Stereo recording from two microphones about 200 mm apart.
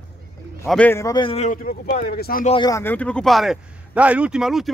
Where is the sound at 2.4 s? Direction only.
25° left (ahead or behind).